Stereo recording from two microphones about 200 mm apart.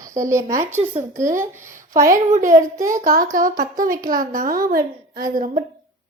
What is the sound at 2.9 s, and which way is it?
A woman's voice, 45° right (ahead or behind).